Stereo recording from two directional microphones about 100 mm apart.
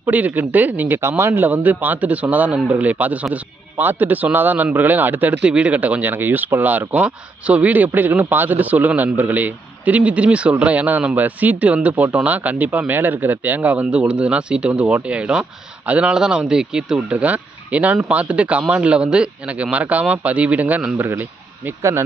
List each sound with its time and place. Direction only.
0.0 s speech: 15° right (ahead or behind)